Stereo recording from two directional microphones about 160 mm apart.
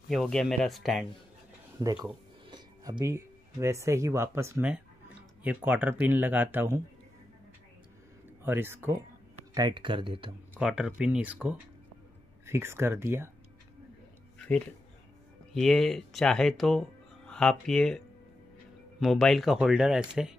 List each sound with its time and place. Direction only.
0.1 s speech: centre (ahead or behind)
1.8 s speech: 20° right (ahead or behind)
8.4 s speech: 15° right (ahead or behind)
9.5 s speech: 25° right (ahead or behind)
10.5 s speech: 5° right (ahead or behind)
15.5 s speech: centre (ahead or behind)